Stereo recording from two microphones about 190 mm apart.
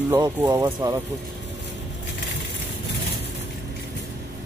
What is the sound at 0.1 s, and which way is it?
Speech, 20° right (ahead or behind).